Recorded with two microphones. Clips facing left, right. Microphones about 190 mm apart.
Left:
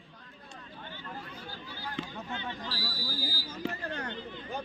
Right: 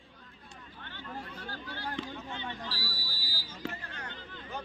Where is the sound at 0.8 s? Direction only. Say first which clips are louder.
Right 1 dB; 70° right (ahead or behind).